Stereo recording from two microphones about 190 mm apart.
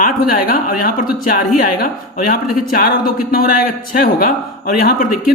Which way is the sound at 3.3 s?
50° left (ahead or behind).